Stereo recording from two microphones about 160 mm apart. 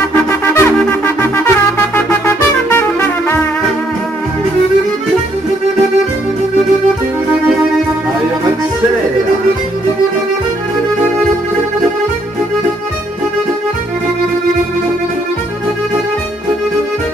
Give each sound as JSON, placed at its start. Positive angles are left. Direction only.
{"t": 0.3, "sound": "wind instrument", "side_deg": 15}
{"t": 2.2, "sound": "music", "side_deg": 15}